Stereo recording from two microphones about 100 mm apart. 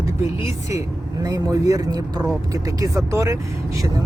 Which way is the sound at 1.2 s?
35° right (ahead or behind).